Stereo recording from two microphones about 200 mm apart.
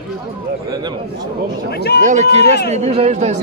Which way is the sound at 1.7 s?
55° left (ahead or behind).